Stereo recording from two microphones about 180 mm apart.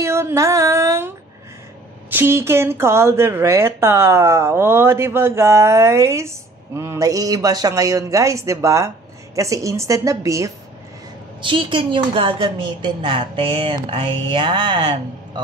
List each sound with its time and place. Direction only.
0.0 s music: 15° right (ahead or behind)
2.0 s speech: 10° right (ahead or behind)
11.4 s a woman's voice: 25° right (ahead or behind)